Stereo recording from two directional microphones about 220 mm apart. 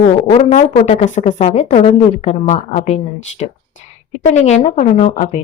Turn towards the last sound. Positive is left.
turn(degrees=35)  # may be behind; listen again after turning